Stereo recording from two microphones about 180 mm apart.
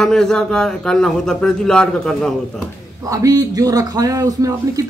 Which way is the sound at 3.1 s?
20° right (ahead or behind).